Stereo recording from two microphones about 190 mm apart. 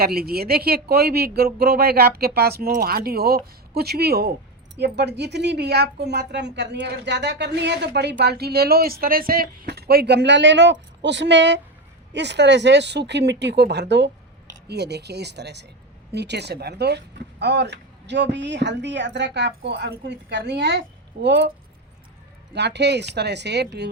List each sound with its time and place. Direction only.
0.0 s speech: 55° right (ahead or behind)
22.5 s speech: 65° right (ahead or behind)